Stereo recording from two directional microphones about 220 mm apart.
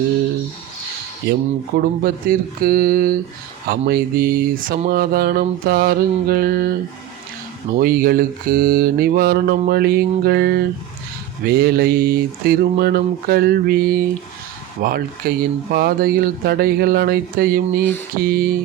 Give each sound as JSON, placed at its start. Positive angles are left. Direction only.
{"t": 1.3, "sound": "speech", "side_deg": -45}
{"t": 7.8, "sound": "speech", "side_deg": -40}